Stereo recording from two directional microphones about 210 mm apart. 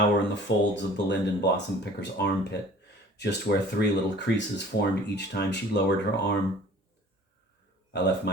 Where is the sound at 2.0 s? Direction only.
55° left (ahead or behind).